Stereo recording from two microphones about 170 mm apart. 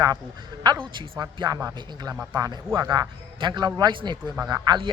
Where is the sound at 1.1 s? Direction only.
25° right (ahead or behind).